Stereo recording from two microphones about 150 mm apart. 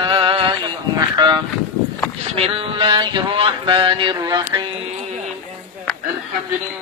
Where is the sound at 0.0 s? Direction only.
35° right (ahead or behind).